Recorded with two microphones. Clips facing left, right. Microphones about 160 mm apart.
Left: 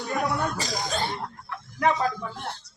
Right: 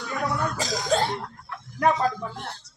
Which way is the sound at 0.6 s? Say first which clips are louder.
Right 5 dB; 90° right.